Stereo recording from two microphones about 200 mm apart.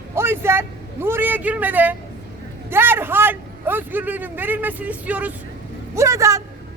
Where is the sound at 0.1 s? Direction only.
10° right (ahead or behind).